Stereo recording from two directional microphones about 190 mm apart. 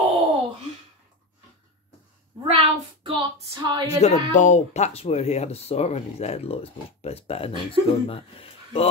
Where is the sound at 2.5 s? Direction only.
30° right (ahead or behind).